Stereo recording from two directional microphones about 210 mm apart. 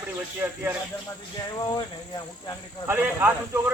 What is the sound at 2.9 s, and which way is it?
Speech, 10° right (ahead or behind).